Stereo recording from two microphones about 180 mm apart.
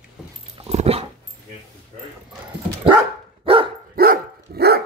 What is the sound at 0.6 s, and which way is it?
Dog, 35° right (ahead or behind).